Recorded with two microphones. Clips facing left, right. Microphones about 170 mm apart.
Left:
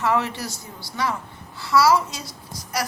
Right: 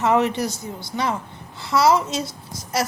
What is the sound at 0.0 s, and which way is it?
A woman's voice, 20° right (ahead or behind).